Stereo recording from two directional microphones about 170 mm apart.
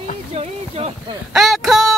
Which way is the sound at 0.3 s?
35° right (ahead or behind).